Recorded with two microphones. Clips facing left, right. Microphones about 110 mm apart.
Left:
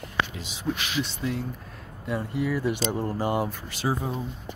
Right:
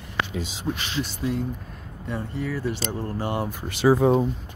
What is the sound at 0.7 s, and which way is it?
Speech, 20° right (ahead or behind).